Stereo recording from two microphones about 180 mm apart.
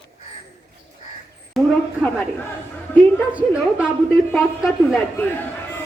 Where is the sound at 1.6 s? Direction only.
Centre (ahead or behind).